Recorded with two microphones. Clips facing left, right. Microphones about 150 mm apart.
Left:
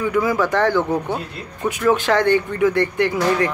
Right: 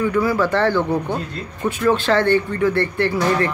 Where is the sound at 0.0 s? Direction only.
15° left (ahead or behind).